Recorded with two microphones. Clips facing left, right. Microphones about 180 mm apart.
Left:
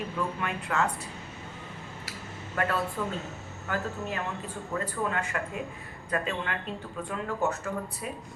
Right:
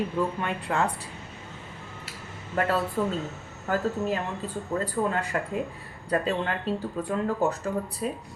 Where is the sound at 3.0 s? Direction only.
35° right (ahead or behind).